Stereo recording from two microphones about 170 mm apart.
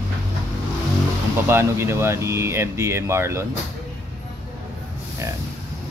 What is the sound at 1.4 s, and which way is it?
Speech, 15° right (ahead or behind).